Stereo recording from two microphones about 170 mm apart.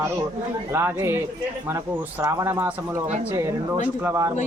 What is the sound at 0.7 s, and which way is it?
Speech, 15° right (ahead or behind).